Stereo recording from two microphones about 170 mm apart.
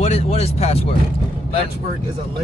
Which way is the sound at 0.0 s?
40° left (ahead or behind).